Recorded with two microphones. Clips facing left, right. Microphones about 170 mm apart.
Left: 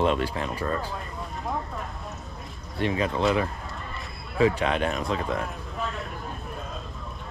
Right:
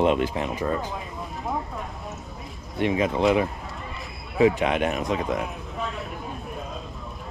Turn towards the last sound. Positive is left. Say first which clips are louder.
# right 1 dB
turn(degrees=0)  # may be behind; listen again after turning